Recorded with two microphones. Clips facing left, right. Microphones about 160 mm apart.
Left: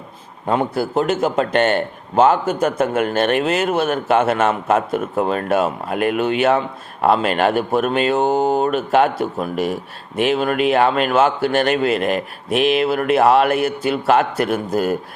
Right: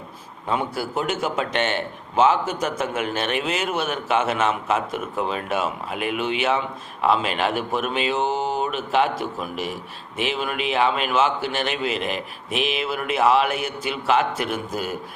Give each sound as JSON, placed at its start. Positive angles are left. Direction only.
{"t": 0.4, "sound": "a man's voice", "side_deg": 45}